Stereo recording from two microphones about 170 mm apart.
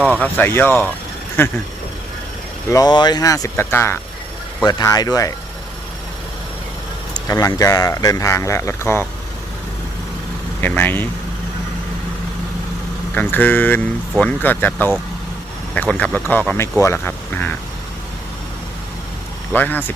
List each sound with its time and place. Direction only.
0.0 s speech: 10° left (ahead or behind)
2.6 s speech: 20° left (ahead or behind)
7.1 s speech: 20° left (ahead or behind)
10.6 s speech: 10° left (ahead or behind)
13.1 s speech: 10° left (ahead or behind)
19.5 s speech: 10° left (ahead or behind)